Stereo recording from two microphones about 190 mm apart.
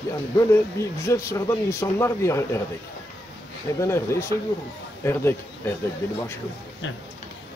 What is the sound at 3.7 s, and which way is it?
A man's voice, 15° left (ahead or behind).